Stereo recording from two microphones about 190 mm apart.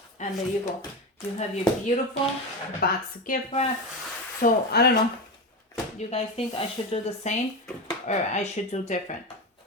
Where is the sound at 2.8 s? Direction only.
50° left (ahead or behind).